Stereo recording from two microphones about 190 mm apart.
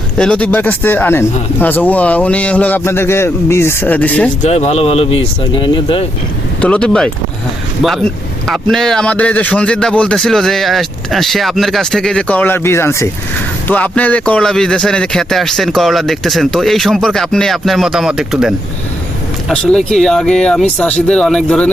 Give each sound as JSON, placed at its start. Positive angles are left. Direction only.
{"t": 0.2, "sound": "speech", "side_deg": 5}
{"t": 4.4, "sound": "speech", "side_deg": 35}
{"t": 6.6, "sound": "a man's voice", "side_deg": 5}